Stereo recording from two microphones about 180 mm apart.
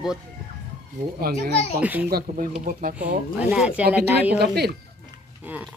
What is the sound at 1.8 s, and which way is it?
Speech, 10° right (ahead or behind).